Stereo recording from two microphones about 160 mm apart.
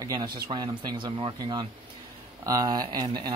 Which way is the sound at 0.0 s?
25° right (ahead or behind).